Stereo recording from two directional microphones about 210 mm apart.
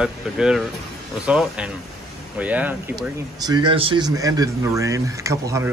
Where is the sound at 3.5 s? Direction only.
25° right (ahead or behind).